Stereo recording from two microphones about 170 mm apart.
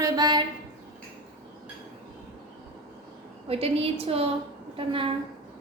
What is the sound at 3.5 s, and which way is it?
A woman's voice, 35° right (ahead or behind).